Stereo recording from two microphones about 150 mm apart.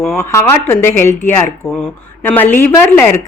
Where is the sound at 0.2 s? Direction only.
15° left (ahead or behind).